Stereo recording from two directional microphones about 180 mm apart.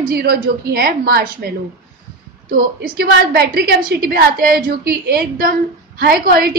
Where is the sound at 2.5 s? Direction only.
55° right (ahead or behind).